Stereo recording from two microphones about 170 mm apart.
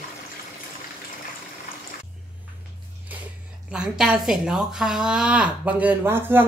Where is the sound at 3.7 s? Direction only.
5° right (ahead or behind).